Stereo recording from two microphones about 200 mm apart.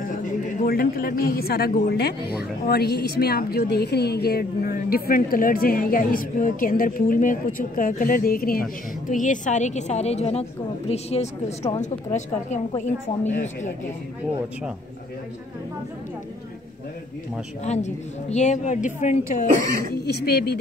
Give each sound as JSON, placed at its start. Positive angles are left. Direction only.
{"t": 0.1, "sound": "a man's voice", "side_deg": 40}
{"t": 17.6, "sound": "a woman's voice", "side_deg": 35}
{"t": 19.9, "sound": "a woman's voice", "side_deg": 55}